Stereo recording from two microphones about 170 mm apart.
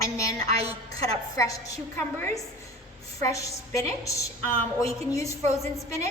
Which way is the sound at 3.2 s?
20° left (ahead or behind).